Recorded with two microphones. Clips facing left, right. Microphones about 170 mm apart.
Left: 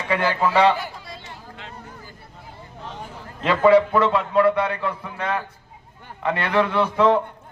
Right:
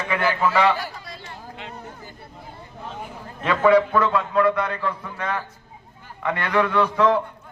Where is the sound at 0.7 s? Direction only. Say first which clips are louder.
Even; 20° left (ahead or behind).